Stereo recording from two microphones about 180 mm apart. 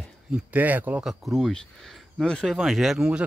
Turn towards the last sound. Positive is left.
turn(degrees=-5)  # may be behind; listen again after turning